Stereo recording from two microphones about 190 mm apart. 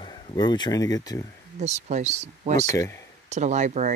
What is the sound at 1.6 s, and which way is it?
Speech, 35° right (ahead or behind).